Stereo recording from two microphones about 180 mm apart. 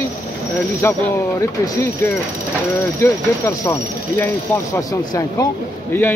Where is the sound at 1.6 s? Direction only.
15° left (ahead or behind).